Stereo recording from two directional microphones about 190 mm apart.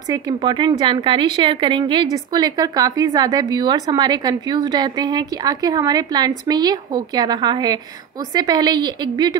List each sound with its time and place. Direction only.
0.1 s speech: 25° right (ahead or behind)